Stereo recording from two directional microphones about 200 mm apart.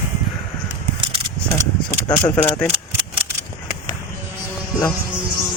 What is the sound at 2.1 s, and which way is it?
Speech, 15° left (ahead or behind).